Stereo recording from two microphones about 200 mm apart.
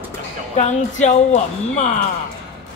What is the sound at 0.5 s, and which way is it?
A woman's voice, 35° left (ahead or behind).